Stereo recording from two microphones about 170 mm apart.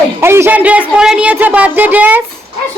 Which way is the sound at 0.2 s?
15° right (ahead or behind).